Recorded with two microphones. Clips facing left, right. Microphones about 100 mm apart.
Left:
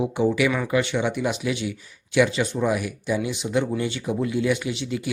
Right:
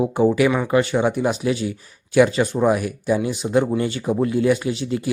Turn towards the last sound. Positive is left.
turn(degrees=-40)  # may be behind; listen again after turning